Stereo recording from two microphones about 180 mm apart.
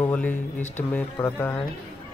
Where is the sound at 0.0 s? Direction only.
10° left (ahead or behind).